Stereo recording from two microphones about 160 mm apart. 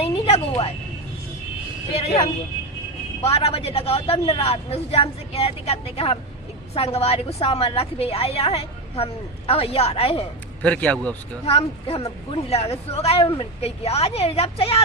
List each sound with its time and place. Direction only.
0.0 s a sound: 40° left (ahead or behind)
1.9 s a woman's voice: 40° left (ahead or behind)
10.6 s speech: 10° left (ahead or behind)
11.4 s a woman's voice: 35° left (ahead or behind)